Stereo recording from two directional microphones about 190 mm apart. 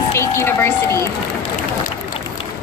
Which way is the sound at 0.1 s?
15° left (ahead or behind).